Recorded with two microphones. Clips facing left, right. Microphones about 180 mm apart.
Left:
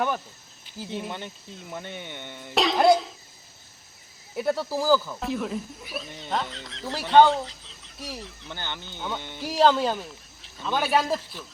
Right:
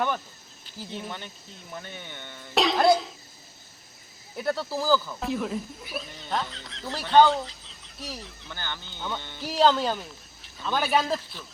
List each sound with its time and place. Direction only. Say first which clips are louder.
0.9 s speech: left 4 dB; 15° left (ahead or behind)
2.6 s cough: left 1 dB; centre (ahead or behind)
4.4 s speech: left 3 dB; 10° left (ahead or behind)
5.2 s speech: even; centre (ahead or behind)
8.4 s speech: left 1 dB; 20° left (ahead or behind)